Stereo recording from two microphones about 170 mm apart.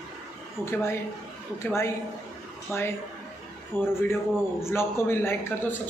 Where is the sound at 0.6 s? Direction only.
15° left (ahead or behind).